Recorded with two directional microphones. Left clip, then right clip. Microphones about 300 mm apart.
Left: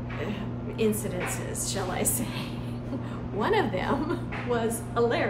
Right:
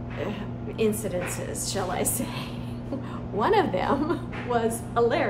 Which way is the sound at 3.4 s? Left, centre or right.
Centre.